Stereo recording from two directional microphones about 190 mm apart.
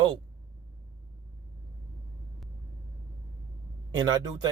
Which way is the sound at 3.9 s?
20° right (ahead or behind).